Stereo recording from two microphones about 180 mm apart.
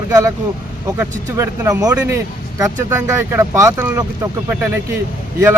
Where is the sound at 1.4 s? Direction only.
15° right (ahead or behind).